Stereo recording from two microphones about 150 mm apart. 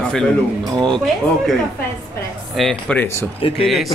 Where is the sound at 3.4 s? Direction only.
40° left (ahead or behind).